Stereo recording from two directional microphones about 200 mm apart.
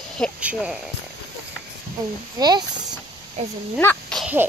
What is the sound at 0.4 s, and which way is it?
Speech, 5° right (ahead or behind).